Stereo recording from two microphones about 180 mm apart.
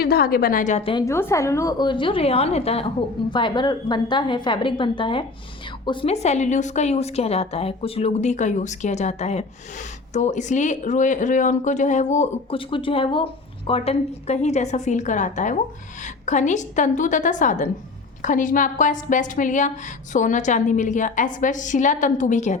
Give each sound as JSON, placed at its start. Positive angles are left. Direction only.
{"t": 0.0, "sound": "a woman's voice", "side_deg": 60}
{"t": 1.0, "sound": "a woman's voice", "side_deg": 15}
{"t": 12.5, "sound": "a woman's voice", "side_deg": 30}